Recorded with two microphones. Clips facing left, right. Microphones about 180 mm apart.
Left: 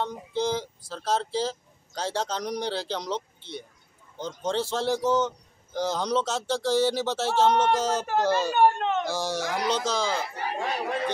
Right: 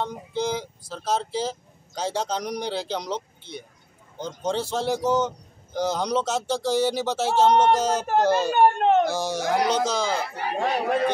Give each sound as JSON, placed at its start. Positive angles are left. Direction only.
{"t": 0.0, "sound": "speech", "side_deg": -15}
{"t": 4.2, "sound": "speech", "side_deg": -15}
{"t": 8.5, "sound": "speech", "side_deg": -50}
{"t": 9.1, "sound": "speech", "side_deg": -20}